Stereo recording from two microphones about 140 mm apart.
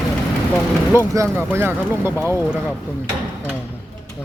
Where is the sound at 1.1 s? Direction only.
20° right (ahead or behind).